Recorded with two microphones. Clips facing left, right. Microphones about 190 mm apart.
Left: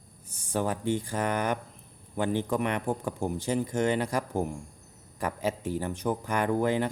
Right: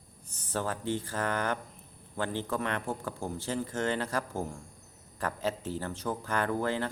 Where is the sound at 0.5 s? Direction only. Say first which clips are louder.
Left 4 dB; 15° left (ahead or behind).